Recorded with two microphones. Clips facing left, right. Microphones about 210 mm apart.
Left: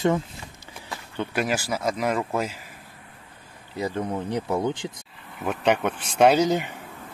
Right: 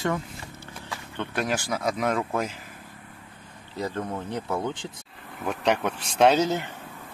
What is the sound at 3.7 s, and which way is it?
Speech, 10° left (ahead or behind).